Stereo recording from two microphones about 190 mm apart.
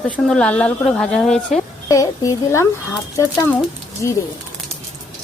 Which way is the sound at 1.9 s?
15° left (ahead or behind).